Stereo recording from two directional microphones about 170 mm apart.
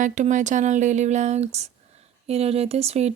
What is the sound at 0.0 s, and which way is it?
Speech, 45° right (ahead or behind).